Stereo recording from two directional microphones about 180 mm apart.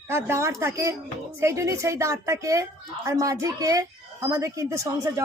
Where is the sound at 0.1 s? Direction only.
15° right (ahead or behind).